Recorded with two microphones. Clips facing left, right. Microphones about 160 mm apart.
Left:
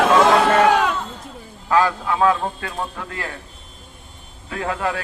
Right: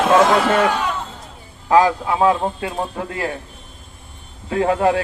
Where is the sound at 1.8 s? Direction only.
25° right (ahead or behind).